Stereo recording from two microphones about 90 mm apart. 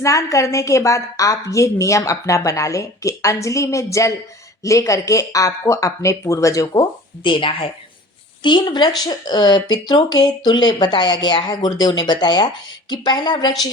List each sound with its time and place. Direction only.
0.0 s a woman's voice: 35° left (ahead or behind)
7.3 s a woman's voice: 75° left (ahead or behind)
8.4 s a woman's voice: 55° left (ahead or behind)